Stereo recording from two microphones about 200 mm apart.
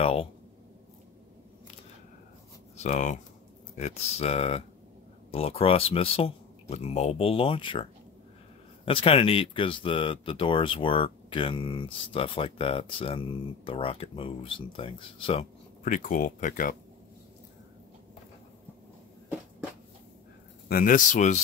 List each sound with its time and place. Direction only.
0.0 s speech: 30° left (ahead or behind)
2.8 s speech: 35° left (ahead or behind)
15.9 s speech: 45° left (ahead or behind)
20.6 s speech: 45° left (ahead or behind)